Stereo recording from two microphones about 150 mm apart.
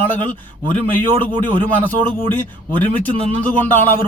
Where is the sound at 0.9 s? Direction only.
10° left (ahead or behind).